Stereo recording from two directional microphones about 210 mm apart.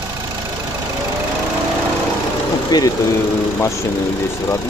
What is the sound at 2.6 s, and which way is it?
Vehicle, 20° left (ahead or behind).